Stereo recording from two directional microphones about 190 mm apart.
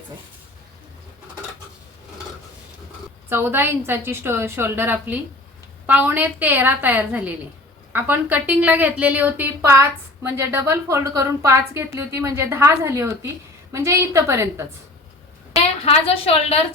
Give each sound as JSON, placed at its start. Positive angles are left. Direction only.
{"t": 3.2, "sound": "a woman's voice", "side_deg": -10}
{"t": 15.5, "sound": "a woman's voice", "side_deg": 30}